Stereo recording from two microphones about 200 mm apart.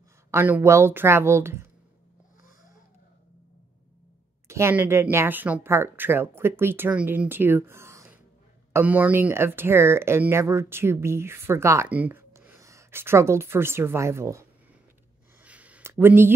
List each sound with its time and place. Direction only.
0.3 s speech: 10° right (ahead or behind)
4.5 s speech: 15° right (ahead or behind)
15.4 s a sound: 5° right (ahead or behind)